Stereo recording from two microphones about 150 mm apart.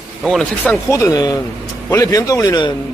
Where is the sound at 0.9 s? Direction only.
20° left (ahead or behind).